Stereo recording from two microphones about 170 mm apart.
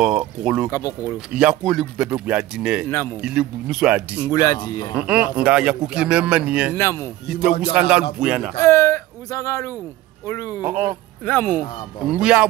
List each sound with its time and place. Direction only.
0.0 s speech: 5° right (ahead or behind)
0.7 s speech: 20° left (ahead or behind)
1.3 s speech: 5° right (ahead or behind)
2.9 s speech: 15° left (ahead or behind)
3.2 s speech: 5° right (ahead or behind)
4.3 s speech: 20° left (ahead or behind)
4.9 s speech: 5° right (ahead or behind)
6.7 s speech: 15° left (ahead or behind)
7.8 s speech: 10° right (ahead or behind)
8.5 s speech: 15° left (ahead or behind)
10.6 s speech: 10° right (ahead or behind)
11.2 s speech: 5° left (ahead or behind)
12.1 s speech: 5° right (ahead or behind)